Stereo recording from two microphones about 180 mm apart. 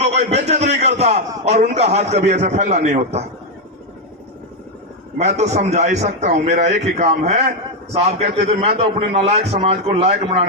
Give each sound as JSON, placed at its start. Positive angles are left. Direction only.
{"t": 0.0, "sound": "a man's voice", "side_deg": -35}
{"t": 5.1, "sound": "a man's voice", "side_deg": -40}